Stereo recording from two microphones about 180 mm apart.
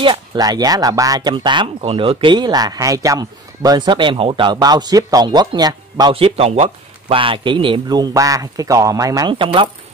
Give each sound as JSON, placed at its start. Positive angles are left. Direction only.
{"t": 0.0, "sound": "speech", "side_deg": -25}